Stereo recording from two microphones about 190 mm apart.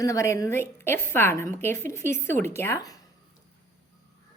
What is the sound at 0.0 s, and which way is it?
Speech, 15° left (ahead or behind).